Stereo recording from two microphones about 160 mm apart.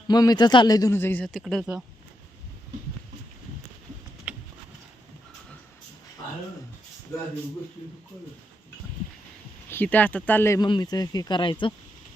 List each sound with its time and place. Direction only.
0.1 s a man's voice: 25° left (ahead or behind)
1.3 s speech: centre (ahead or behind)
4.3 s a sound: 10° right (ahead or behind)
7.1 s speech: 15° left (ahead or behind)
9.6 s speech: 10° left (ahead or behind)
10.6 s a man's voice: 25° left (ahead or behind)